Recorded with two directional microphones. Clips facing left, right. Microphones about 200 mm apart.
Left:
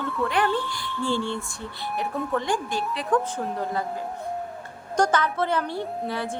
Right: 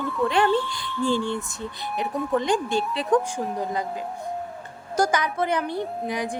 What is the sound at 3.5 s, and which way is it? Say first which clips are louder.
A woman's voice: right 1 dB; 15° right (ahead or behind).